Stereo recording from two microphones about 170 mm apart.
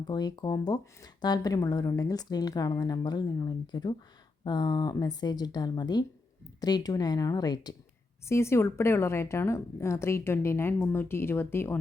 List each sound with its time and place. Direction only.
0.1 s a woman's voice: 25° left (ahead or behind)